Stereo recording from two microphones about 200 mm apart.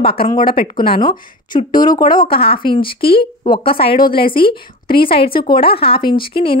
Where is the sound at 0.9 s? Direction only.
25° left (ahead or behind).